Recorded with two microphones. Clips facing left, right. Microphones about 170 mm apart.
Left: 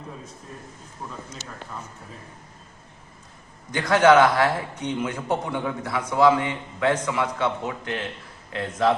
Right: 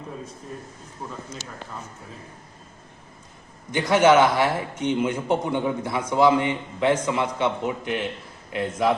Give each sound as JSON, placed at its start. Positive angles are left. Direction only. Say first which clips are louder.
{"t": 3.7, "sound": "a man's voice", "louder": "even", "side_deg": -20}